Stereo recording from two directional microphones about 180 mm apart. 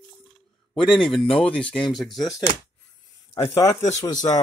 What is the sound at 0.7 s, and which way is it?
Speech, centre (ahead or behind).